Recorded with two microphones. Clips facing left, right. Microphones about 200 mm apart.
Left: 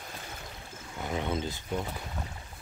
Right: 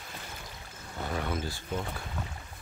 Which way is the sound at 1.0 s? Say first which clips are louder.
Left 1 dB; 20° left (ahead or behind).